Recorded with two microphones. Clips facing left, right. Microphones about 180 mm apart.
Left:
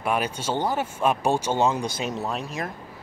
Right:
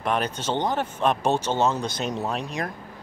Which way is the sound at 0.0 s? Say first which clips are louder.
Even; 10° left (ahead or behind).